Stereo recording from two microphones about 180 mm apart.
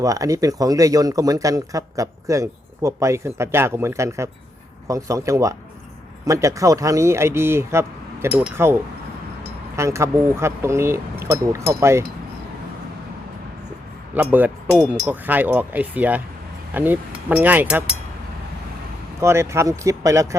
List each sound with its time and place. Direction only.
0.0 s speech: 20° right (ahead or behind)
14.1 s speech: 10° right (ahead or behind)
19.2 s speech: 15° right (ahead or behind)